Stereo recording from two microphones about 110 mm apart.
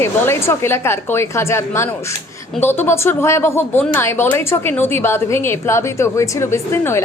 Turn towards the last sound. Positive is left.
turn(degrees=25)  # may be behind; listen again after turning